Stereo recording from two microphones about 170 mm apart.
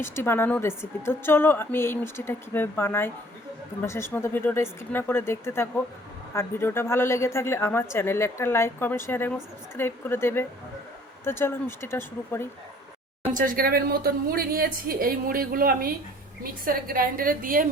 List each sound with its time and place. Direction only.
0.0 s a woman's voice: 15° left (ahead or behind)
13.3 s a woman's voice: 55° right (ahead or behind)